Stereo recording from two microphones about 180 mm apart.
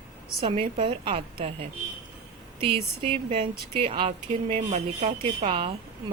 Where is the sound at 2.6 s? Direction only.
30° right (ahead or behind).